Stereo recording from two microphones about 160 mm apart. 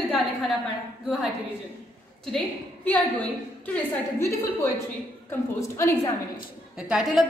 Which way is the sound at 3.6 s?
15° left (ahead or behind).